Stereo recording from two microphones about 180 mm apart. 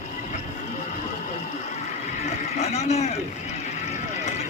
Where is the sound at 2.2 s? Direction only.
40° left (ahead or behind).